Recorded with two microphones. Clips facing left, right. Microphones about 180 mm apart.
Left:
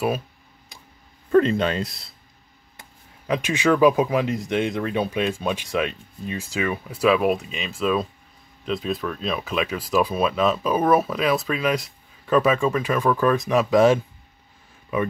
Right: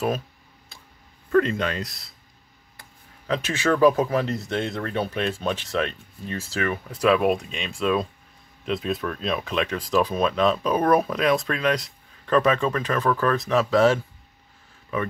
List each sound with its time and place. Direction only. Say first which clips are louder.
1.3 s speech: left 3 dB; 25° left (ahead or behind)
2.8 s speech: left 2 dB; 15° left (ahead or behind)